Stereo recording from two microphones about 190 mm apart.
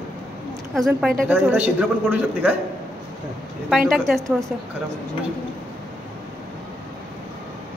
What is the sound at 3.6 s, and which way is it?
Speech, centre (ahead or behind).